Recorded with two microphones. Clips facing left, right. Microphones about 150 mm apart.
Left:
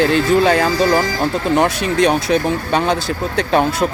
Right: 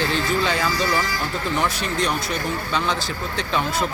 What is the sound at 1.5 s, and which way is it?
Speech, 70° left (ahead or behind).